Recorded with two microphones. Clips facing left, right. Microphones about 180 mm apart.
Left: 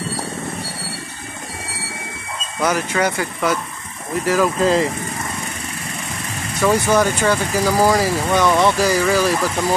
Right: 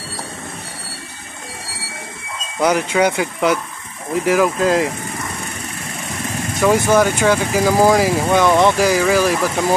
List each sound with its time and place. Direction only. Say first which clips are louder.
2.6 s speech: right 3 dB; 15° right (ahead or behind)
4.6 s speech: even; 10° right (ahead or behind)
6.6 s speech: right 2 dB; 10° right (ahead or behind)